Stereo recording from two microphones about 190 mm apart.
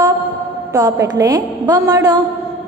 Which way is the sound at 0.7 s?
20° right (ahead or behind).